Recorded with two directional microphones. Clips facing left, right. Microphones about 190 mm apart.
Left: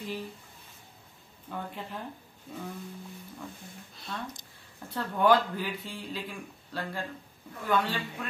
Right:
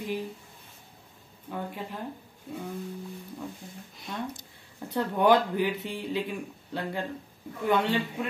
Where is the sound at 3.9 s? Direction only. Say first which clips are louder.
Right 4 dB; 15° right (ahead or behind).